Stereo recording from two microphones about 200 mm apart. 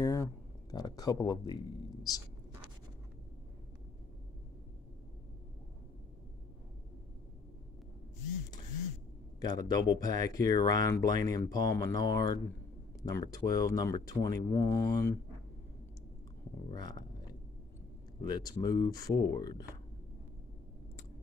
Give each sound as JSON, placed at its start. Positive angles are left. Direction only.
{"t": 0.0, "sound": "speech", "side_deg": 15}
{"t": 9.4, "sound": "speech", "side_deg": 20}
{"t": 16.7, "sound": "speech", "side_deg": 20}
{"t": 18.2, "sound": "speech", "side_deg": 20}